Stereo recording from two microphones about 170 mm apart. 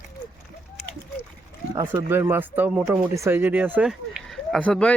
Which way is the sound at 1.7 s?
20° right (ahead or behind).